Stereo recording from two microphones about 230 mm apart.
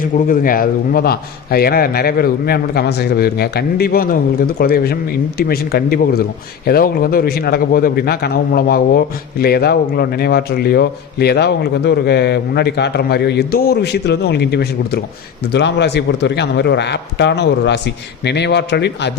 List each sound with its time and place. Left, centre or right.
0.0 s a man's voice: left